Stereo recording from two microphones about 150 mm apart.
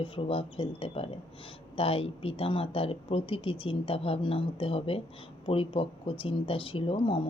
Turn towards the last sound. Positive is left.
turn(degrees=35)  # may be behind; listen again after turning